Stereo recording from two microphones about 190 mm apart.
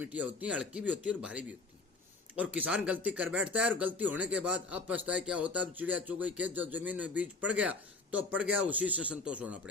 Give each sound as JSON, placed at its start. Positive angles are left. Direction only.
{"t": 0.0, "sound": "speech", "side_deg": -10}